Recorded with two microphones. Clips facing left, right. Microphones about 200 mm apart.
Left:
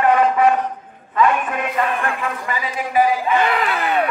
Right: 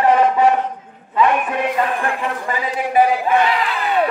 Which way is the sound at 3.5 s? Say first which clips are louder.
Even; 55° left (ahead or behind).